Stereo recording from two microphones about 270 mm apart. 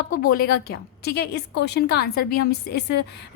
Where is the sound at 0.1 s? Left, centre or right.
Left.